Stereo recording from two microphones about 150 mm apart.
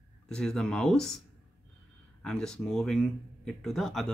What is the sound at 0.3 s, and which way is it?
Speech, 5° left (ahead or behind).